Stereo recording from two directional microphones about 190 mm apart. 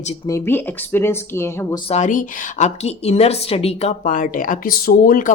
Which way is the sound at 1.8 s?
40° left (ahead or behind).